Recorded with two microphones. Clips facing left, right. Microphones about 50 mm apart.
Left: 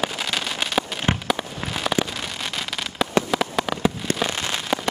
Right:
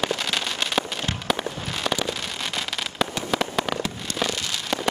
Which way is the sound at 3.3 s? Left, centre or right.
Centre.